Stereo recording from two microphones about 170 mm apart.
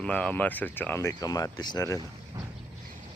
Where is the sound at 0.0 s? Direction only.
5° left (ahead or behind).